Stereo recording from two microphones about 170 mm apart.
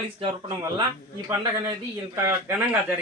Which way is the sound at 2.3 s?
15° right (ahead or behind).